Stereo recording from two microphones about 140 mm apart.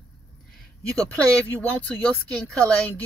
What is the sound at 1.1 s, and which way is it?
Speech, 10° left (ahead or behind).